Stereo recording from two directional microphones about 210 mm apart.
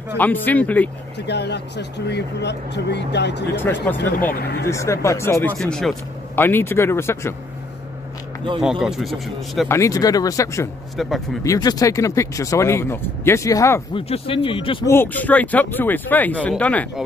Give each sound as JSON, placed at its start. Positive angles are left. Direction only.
{"t": 0.2, "sound": "speech", "side_deg": 10}
{"t": 1.2, "sound": "speech", "side_deg": 55}
{"t": 3.9, "sound": "speech", "side_deg": 10}
{"t": 8.5, "sound": "a man's voice", "side_deg": -5}
{"t": 9.7, "sound": "speech", "side_deg": 15}
{"t": 11.0, "sound": "a man's voice", "side_deg": 0}
{"t": 11.4, "sound": "speech", "side_deg": 15}
{"t": 13.9, "sound": "speech", "side_deg": 25}
{"t": 14.9, "sound": "speech", "side_deg": 10}